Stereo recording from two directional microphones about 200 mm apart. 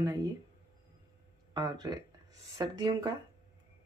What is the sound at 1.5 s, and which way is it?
Speech, 20° right (ahead or behind).